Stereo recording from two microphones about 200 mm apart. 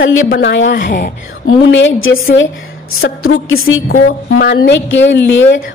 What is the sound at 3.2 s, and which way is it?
Speech, 90° left.